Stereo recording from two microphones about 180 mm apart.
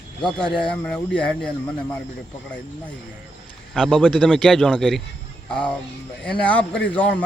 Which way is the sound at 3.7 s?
Centre (ahead or behind).